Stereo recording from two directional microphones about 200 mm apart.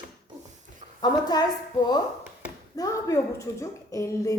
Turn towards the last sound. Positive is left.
turn(degrees=15)  # may be behind; listen again after turning